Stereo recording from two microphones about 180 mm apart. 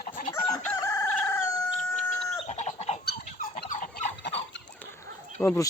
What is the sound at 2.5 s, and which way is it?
Fowl, 40° left (ahead or behind).